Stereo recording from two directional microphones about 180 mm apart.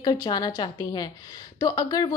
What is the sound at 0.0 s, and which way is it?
A woman's voice, 20° left (ahead or behind).